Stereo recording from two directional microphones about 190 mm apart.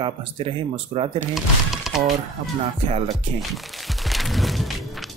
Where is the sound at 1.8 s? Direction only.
Centre (ahead or behind).